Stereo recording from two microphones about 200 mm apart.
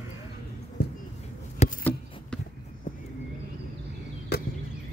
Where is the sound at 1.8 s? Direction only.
10° left (ahead or behind).